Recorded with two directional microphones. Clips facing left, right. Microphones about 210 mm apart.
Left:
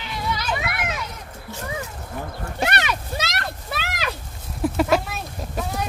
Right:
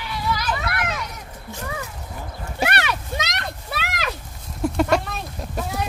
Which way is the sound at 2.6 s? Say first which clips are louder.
Right 1 dB; centre (ahead or behind).